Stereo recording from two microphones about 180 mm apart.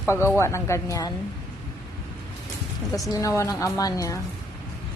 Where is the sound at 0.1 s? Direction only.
15° left (ahead or behind).